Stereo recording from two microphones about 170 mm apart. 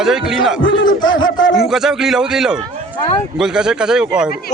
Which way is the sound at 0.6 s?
90° left.